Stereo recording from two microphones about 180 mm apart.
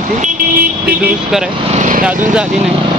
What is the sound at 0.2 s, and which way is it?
Speech, 50° right (ahead or behind).